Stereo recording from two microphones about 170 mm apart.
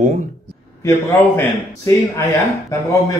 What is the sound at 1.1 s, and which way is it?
Speech, 15° left (ahead or behind).